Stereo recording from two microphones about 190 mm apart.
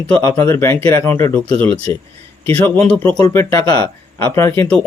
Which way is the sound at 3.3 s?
20° left (ahead or behind).